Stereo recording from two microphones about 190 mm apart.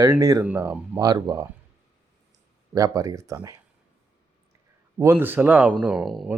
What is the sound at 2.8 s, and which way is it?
Speech, 20° right (ahead or behind).